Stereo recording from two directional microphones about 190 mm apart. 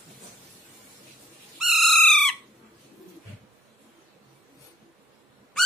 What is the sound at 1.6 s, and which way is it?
Owl, centre (ahead or behind).